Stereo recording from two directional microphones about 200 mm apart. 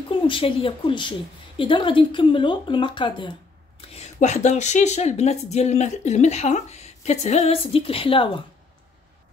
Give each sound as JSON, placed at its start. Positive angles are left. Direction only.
{"t": 0.1, "sound": "speech", "side_deg": 25}
{"t": 3.9, "sound": "speech", "side_deg": 35}